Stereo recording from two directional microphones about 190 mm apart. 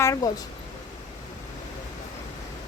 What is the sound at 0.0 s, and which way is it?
Speech, 15° left (ahead or behind).